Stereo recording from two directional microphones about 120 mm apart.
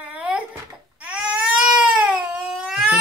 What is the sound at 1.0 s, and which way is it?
Baby cry, 10° right (ahead or behind).